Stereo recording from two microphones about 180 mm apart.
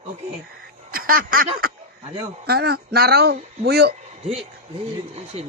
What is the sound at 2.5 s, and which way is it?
A woman's voice, 60° right (ahead or behind).